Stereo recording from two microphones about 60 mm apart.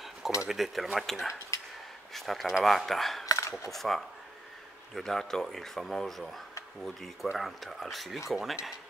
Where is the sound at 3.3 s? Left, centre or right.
Left.